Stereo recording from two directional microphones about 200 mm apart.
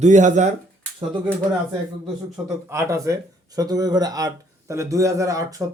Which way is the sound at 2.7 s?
15° right (ahead or behind).